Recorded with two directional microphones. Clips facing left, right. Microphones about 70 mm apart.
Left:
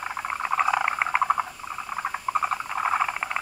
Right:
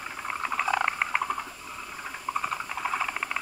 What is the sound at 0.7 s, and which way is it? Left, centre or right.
Frog, centre.